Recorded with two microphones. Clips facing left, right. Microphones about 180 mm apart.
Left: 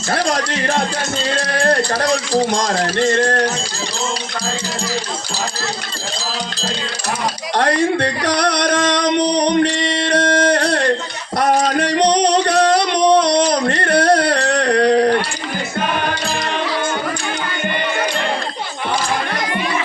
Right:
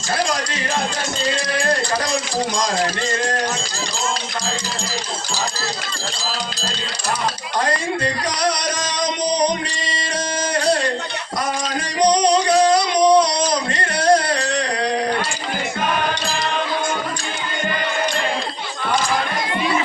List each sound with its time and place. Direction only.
0.1 s speech: 65° left (ahead or behind)
7.6 s music: 70° left (ahead or behind)
11.3 s a sound: 65° left (ahead or behind)
12.1 s singing: 65° left (ahead or behind)